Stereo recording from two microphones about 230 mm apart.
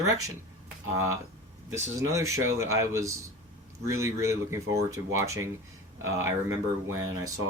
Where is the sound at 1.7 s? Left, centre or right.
Centre.